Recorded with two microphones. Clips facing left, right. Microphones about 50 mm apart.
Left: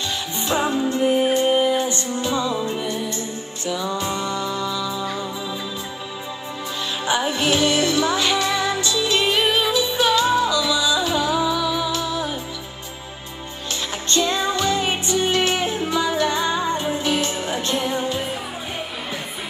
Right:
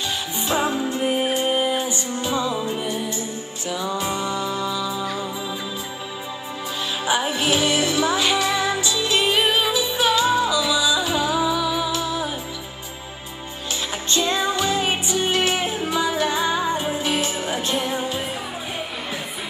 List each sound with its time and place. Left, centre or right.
0.4 s music: centre
7.1 s music: centre
14.0 s music: centre